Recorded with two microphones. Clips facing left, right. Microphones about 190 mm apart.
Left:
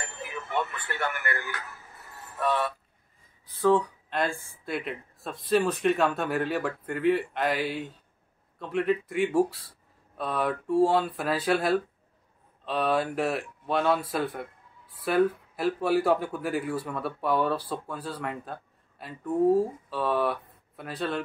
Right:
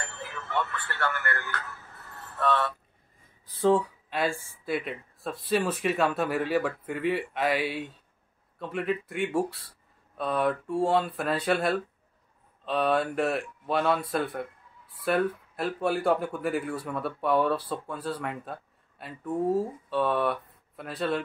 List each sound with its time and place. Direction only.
0.0 s music: 15° left (ahead or behind)
3.7 s speech: 5° right (ahead or behind)